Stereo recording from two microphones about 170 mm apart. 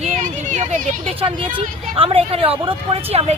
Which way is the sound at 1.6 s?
35° right (ahead or behind).